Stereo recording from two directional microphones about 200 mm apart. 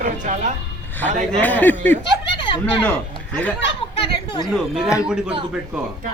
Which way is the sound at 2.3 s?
25° left (ahead or behind).